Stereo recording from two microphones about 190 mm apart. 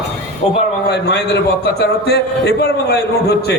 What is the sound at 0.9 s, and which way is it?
A man's voice, 60° left (ahead or behind).